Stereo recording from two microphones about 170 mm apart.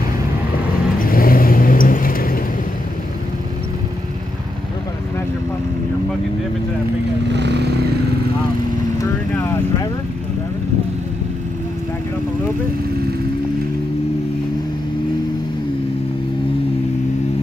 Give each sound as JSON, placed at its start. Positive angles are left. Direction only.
{"t": 0.9, "sound": "vehicle", "side_deg": 55}
{"t": 7.2, "sound": "vehicle", "side_deg": -90}